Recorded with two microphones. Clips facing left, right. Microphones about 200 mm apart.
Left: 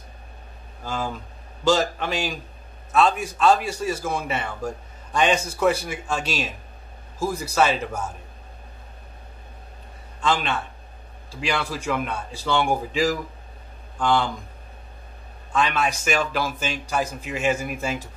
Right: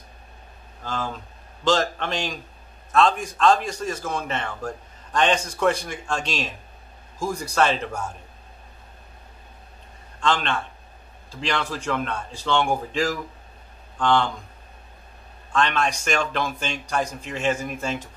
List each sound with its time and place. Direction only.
0.8 s a man's voice: 10° left (ahead or behind)
10.2 s a man's voice: 5° left (ahead or behind)
15.5 s a man's voice: 5° left (ahead or behind)